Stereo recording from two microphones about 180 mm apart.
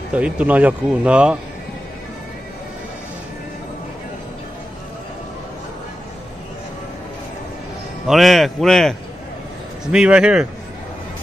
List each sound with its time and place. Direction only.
0.1 s speech: 5° right (ahead or behind)
8.1 s speech: centre (ahead or behind)